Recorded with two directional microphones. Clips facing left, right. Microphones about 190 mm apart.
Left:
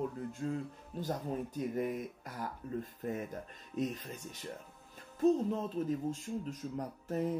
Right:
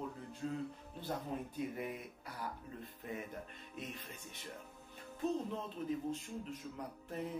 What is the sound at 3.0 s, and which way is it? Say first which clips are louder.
Speech: left 6 dB; 45° left (ahead or behind).